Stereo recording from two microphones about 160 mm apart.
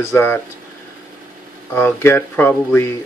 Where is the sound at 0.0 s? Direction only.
15° left (ahead or behind).